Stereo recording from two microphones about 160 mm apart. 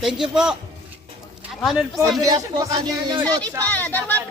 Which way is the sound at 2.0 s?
25° right (ahead or behind).